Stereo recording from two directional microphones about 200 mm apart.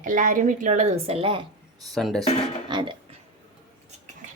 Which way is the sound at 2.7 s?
20° right (ahead or behind).